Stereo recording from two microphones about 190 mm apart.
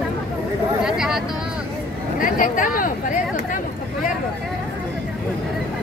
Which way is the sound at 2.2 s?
45° left (ahead or behind).